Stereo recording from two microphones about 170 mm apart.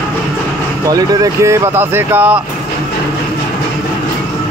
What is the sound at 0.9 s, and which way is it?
Speech, 20° right (ahead or behind).